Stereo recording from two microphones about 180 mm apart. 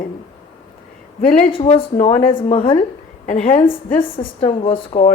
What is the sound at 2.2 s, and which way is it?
Speech, 50° left (ahead or behind).